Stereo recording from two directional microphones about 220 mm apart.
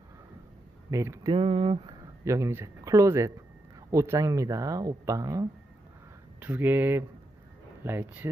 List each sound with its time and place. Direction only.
0.8 s speech: 15° right (ahead or behind)
1.3 s speech: 25° right (ahead or behind)
2.2 s speech: 15° right (ahead or behind)